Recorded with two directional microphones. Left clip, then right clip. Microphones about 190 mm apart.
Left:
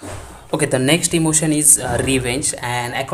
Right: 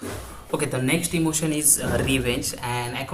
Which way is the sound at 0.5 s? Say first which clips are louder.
Left 8 dB; 40° left (ahead or behind).